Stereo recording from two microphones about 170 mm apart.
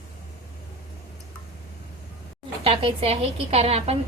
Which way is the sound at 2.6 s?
35° right (ahead or behind).